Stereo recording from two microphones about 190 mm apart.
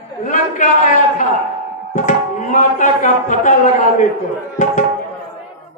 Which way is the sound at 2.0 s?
40° left (ahead or behind).